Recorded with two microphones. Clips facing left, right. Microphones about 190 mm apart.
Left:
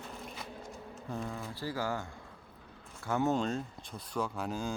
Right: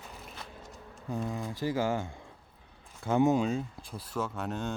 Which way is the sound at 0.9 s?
10° right (ahead or behind).